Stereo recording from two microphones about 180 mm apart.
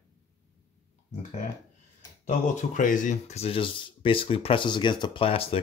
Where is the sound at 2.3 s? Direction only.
45° left (ahead or behind).